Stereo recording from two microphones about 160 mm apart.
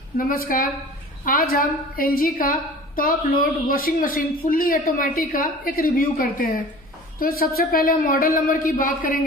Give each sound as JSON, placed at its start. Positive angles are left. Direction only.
{"t": 0.3, "sound": "a woman's voice", "side_deg": 65}